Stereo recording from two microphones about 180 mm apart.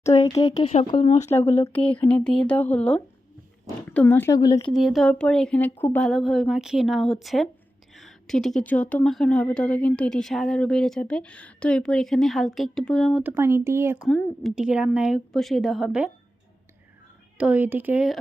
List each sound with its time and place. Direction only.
0.0 s speech: 40° left (ahead or behind)
0.4 s speech: 25° left (ahead or behind)
1.6 s speech: 10° left (ahead or behind)
4.6 s speech: centre (ahead or behind)
13.2 s speech: 15° right (ahead or behind)
14.0 s speech: 5° left (ahead or behind)
17.3 s speech: 10° right (ahead or behind)